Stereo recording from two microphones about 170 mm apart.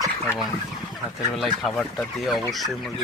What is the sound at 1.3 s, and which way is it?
Speech, centre (ahead or behind).